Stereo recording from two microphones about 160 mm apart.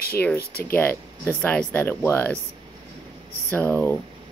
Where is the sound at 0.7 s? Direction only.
10° left (ahead or behind).